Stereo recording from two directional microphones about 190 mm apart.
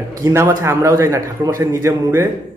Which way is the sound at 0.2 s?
15° right (ahead or behind).